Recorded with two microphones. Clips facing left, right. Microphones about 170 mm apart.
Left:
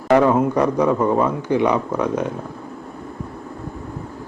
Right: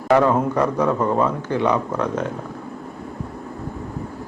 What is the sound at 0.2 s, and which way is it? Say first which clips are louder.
Speech: left 2 dB; 10° left (ahead or behind).